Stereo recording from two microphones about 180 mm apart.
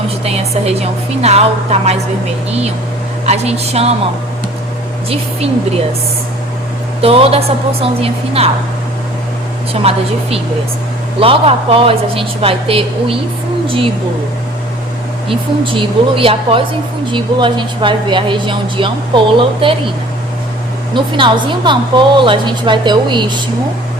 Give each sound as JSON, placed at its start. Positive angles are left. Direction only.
{"t": 0.3, "sound": "a woman's voice", "side_deg": -35}
{"t": 3.2, "sound": "a woman's voice", "side_deg": -35}
{"t": 5.0, "sound": "a woman's voice", "side_deg": -35}
{"t": 7.0, "sound": "a woman's voice", "side_deg": -35}
{"t": 9.8, "sound": "a woman's voice", "side_deg": -35}
{"t": 15.3, "sound": "speech", "side_deg": -30}
{"t": 20.9, "sound": "speech", "side_deg": -25}